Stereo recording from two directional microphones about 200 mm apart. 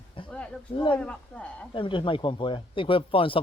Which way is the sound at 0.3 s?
5° left (ahead or behind).